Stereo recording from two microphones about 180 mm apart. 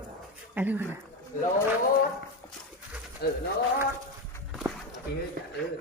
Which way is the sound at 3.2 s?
60° left (ahead or behind).